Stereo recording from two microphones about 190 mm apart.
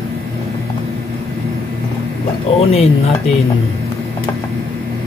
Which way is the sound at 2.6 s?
30° left (ahead or behind).